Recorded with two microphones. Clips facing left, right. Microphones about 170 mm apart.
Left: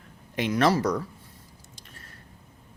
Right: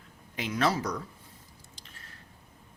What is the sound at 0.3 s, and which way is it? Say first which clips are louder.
Speech: left 6 dB; 70° left (ahead or behind).